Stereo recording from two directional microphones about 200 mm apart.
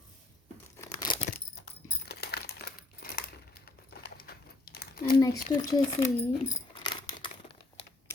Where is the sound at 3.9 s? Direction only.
50° left (ahead or behind).